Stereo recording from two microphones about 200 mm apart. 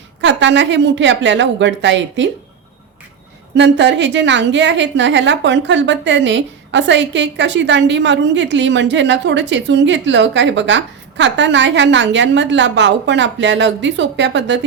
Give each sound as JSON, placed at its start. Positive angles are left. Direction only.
{"t": 0.2, "sound": "a woman's voice", "side_deg": -60}
{"t": 3.5, "sound": "a woman's voice", "side_deg": -60}